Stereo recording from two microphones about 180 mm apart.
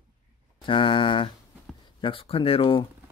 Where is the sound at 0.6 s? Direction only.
30° left (ahead or behind).